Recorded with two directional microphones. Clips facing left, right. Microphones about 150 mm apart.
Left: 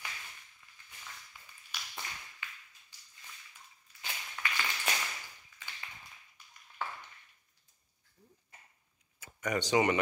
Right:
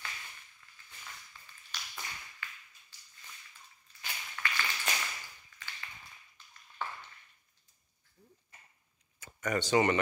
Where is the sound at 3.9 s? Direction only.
15° left (ahead or behind).